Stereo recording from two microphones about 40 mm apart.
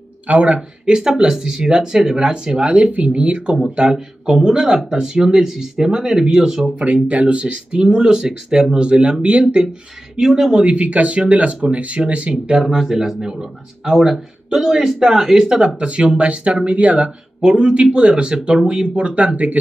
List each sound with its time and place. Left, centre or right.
0.3 s speech: right
0.8 s speech: centre
6.8 s speech: right
10.1 s speech: centre
10.6 s speech: right
12.5 s speech: centre; by 19.6 s right